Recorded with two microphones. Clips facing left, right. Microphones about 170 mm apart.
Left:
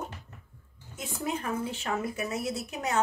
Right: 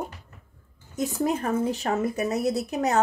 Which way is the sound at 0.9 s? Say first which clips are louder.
Right 8 dB; 40° right (ahead or behind).